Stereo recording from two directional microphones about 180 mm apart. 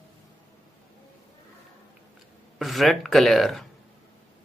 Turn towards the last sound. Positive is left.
turn(degrees=0)  # may be behind; listen again after turning